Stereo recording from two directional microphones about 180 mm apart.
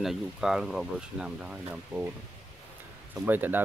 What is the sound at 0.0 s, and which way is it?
Speech, centre (ahead or behind).